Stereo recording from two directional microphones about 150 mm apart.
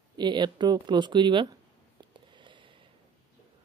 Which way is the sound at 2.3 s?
35° right (ahead or behind).